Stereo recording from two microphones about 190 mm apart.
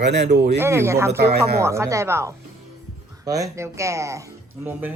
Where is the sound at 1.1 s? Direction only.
55° right (ahead or behind).